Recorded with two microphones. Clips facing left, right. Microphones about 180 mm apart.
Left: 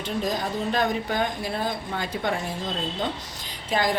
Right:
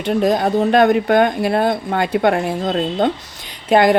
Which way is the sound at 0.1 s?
70° right (ahead or behind).